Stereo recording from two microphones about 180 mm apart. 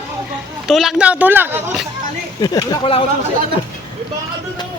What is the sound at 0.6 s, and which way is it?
A man's voice, centre (ahead or behind).